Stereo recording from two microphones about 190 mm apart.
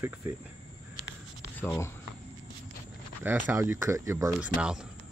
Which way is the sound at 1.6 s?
15° left (ahead or behind).